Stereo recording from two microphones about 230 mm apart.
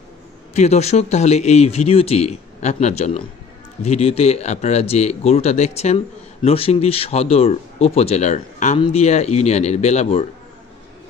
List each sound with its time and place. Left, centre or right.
0.6 s speech: left